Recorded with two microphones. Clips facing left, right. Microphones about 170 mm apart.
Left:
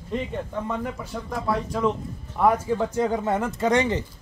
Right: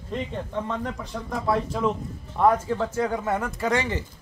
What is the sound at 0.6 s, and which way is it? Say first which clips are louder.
Speech: left 1 dB; 5° left (ahead or behind).